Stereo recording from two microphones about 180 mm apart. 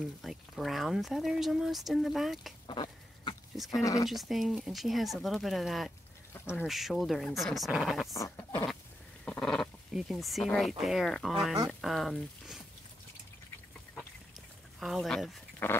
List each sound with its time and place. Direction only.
0.0 s speech: centre (ahead or behind)
2.6 s duck: 25° left (ahead or behind)
3.5 s speech: centre (ahead or behind)
3.8 s speech: 20° left (ahead or behind)
4.1 s speech: centre (ahead or behind)
6.3 s duck: 15° left (ahead or behind)
6.6 s speech: centre (ahead or behind)
8.1 s speech: 20° left (ahead or behind)
9.2 s speech: 5° left (ahead or behind)
14.8 s speech: centre (ahead or behind)
15.6 s dog: 10° left (ahead or behind)